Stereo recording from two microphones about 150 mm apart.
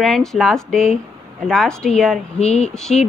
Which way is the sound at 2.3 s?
45° left (ahead or behind).